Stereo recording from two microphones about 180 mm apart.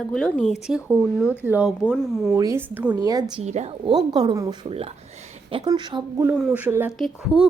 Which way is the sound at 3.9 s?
20° right (ahead or behind).